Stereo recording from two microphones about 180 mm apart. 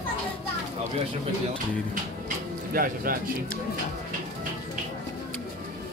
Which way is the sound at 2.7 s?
50° right (ahead or behind).